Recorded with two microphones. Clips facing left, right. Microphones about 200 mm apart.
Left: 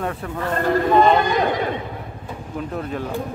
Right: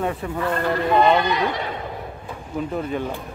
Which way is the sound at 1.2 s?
45° left (ahead or behind).